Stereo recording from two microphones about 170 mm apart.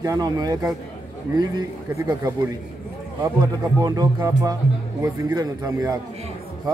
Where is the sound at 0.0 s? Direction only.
20° right (ahead or behind).